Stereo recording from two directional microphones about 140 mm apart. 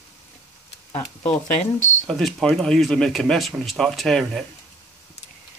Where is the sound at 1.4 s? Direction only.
60° left (ahead or behind).